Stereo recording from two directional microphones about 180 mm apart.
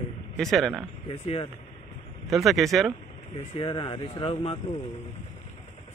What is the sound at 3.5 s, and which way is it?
Speech, 30° left (ahead or behind).